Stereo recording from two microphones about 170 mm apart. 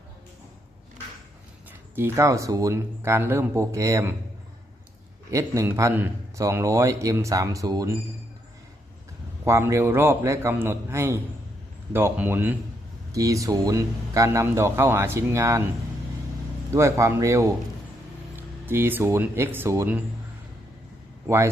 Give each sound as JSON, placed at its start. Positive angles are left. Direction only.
{"t": 2.0, "sound": "a man's voice", "side_deg": -15}
{"t": 5.3, "sound": "a man's voice", "side_deg": -15}
{"t": 9.4, "sound": "a man's voice", "side_deg": -15}
{"t": 16.7, "sound": "a man's voice", "side_deg": -20}
{"t": 18.6, "sound": "a man's voice", "side_deg": -15}
{"t": 21.2, "sound": "speech", "side_deg": -15}